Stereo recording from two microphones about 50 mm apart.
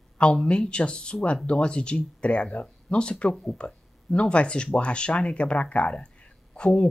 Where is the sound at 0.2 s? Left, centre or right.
Left.